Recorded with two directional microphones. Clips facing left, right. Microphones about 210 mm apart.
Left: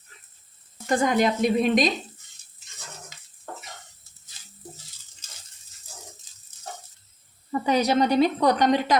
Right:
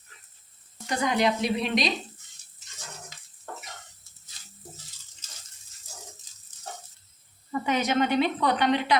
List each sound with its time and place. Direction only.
0.9 s speech: 50° left (ahead or behind)
7.5 s a woman's voice: 35° left (ahead or behind)